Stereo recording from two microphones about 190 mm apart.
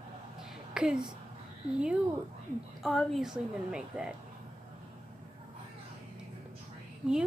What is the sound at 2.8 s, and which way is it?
A woman's voice, centre (ahead or behind).